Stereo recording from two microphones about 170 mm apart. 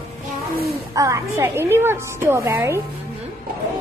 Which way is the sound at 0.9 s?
20° right (ahead or behind).